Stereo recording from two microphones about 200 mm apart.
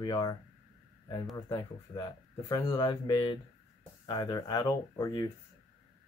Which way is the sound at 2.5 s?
20° left (ahead or behind).